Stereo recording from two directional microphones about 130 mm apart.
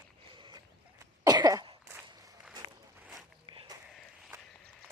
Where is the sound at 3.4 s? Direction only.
40° right (ahead or behind).